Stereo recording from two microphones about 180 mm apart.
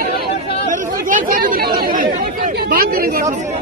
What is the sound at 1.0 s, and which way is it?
Chatter, 50° right (ahead or behind).